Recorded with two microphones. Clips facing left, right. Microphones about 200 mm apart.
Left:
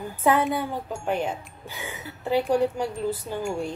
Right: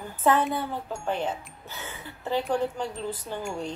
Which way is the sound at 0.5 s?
10° left (ahead or behind).